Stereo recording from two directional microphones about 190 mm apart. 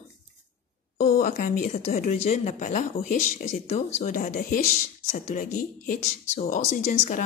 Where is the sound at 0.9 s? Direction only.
40° left (ahead or behind).